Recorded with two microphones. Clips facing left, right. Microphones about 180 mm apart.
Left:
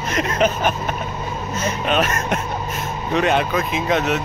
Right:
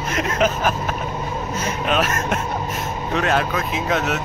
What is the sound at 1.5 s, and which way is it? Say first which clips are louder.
Speech: left 2 dB; 5° right (ahead or behind).